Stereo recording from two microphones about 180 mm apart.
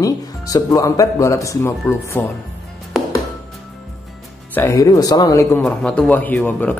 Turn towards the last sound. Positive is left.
turn(degrees=10)  # may be behind; listen again after turning